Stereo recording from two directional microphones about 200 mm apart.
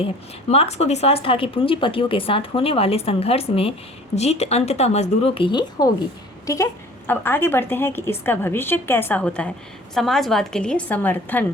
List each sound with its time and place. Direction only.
0.0 s a woman's voice: 30° left (ahead or behind); by 11.4 s 10° left (ahead or behind)